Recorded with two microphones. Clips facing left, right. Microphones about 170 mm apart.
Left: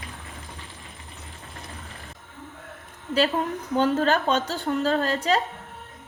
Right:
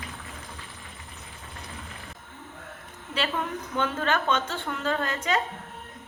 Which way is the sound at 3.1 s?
35° left (ahead or behind).